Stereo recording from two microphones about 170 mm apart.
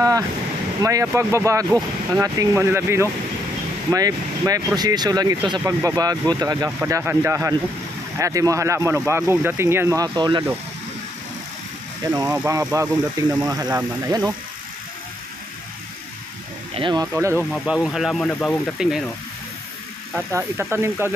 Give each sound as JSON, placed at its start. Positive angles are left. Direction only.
{"t": 0.8, "sound": "speech", "side_deg": -15}
{"t": 12.0, "sound": "speech", "side_deg": -20}
{"t": 16.7, "sound": "speech", "side_deg": -25}
{"t": 17.5, "sound": "speech", "side_deg": 0}
{"t": 18.8, "sound": "speech", "side_deg": -5}
{"t": 20.2, "sound": "speech", "side_deg": -15}